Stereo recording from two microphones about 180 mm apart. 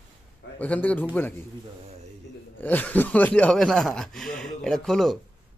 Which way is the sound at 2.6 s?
10° left (ahead or behind).